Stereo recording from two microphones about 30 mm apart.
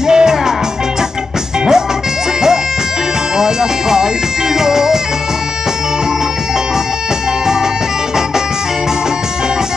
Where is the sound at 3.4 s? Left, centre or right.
Centre.